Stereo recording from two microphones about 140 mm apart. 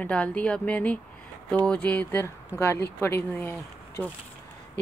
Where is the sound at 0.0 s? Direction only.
10° left (ahead or behind).